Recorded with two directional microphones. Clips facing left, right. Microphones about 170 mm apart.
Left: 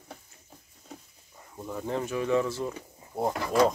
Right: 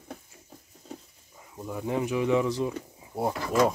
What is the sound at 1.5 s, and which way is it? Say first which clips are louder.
Speech: right 2 dB; 5° right (ahead or behind).